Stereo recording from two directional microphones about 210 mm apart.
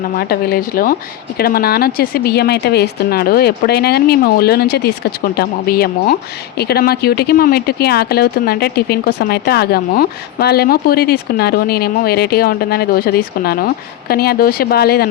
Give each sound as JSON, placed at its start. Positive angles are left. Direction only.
{"t": 0.2, "sound": "speech", "side_deg": 45}